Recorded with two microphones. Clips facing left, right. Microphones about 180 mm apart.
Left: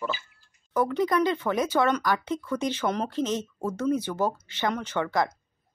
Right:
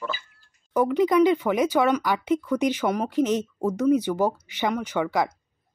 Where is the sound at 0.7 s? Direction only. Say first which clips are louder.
Right 5 dB; 15° right (ahead or behind).